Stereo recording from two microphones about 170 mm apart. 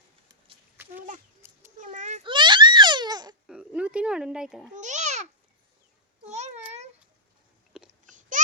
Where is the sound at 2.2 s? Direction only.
30° right (ahead or behind).